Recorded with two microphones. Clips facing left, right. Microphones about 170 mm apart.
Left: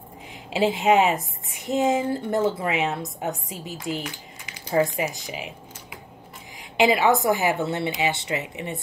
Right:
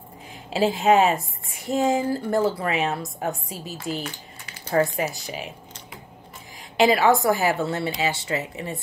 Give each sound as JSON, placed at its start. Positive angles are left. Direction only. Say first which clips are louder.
{"t": 0.5, "sound": "a woman's voice", "louder": "right 1 dB", "side_deg": 20}
{"t": 6.8, "sound": "a woman's voice", "louder": "right 1 dB", "side_deg": 20}